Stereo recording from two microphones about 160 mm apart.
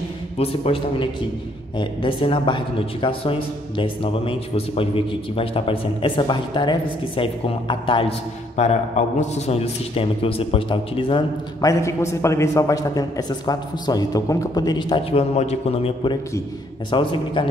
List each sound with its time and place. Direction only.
0.4 s a man's voice: 35° left (ahead or behind)
8.6 s a man's voice: 45° left (ahead or behind)
11.8 s a man's voice: 15° left (ahead or behind)